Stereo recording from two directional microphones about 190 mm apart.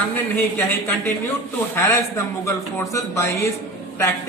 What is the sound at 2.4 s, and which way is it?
Speech, 15° left (ahead or behind).